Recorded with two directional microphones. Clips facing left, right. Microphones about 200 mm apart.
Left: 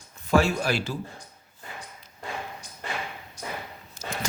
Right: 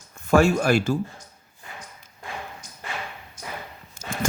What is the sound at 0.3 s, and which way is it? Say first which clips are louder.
Speech: right 4 dB; 50° right (ahead or behind).